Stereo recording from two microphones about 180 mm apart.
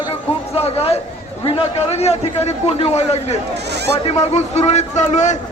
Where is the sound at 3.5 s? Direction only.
70° right (ahead or behind).